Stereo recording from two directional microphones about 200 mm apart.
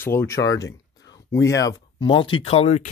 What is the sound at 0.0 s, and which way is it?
Speech, 10° left (ahead or behind).